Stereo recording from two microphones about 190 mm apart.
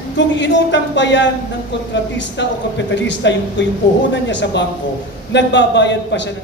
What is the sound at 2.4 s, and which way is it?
Speech, 65° left (ahead or behind).